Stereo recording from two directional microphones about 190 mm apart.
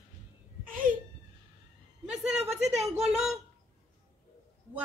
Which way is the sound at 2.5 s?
35° right (ahead or behind).